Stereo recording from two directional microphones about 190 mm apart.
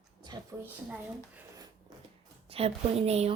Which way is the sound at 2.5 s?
30° right (ahead or behind).